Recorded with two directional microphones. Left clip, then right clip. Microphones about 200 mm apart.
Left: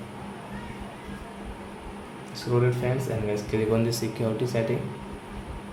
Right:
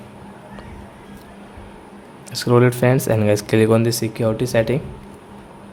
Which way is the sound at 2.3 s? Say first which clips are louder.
Right 10 dB; 55° right (ahead or behind).